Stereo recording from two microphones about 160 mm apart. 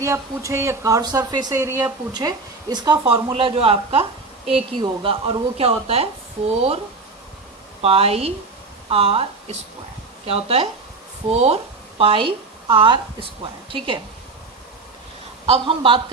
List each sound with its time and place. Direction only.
0.0 s a woman's voice: 20° right (ahead or behind); by 6.8 s 40° right (ahead or behind)
7.8 s a woman's voice: 40° right (ahead or behind)
15.4 s a woman's voice: 35° right (ahead or behind)